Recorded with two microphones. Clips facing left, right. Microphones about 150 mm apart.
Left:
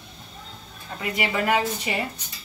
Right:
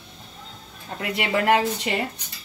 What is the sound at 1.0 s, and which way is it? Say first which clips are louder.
Speech: even; 70° right (ahead or behind).